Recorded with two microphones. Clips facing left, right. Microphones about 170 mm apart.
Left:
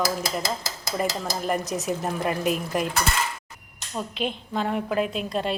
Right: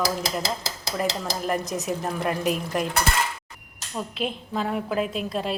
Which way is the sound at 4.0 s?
Centre (ahead or behind).